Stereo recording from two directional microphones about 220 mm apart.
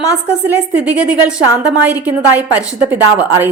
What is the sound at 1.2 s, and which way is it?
A woman's voice, 5° right (ahead or behind).